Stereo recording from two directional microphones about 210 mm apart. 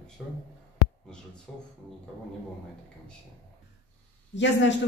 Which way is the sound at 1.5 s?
5° left (ahead or behind).